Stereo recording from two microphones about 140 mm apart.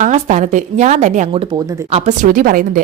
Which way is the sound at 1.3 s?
40° right (ahead or behind).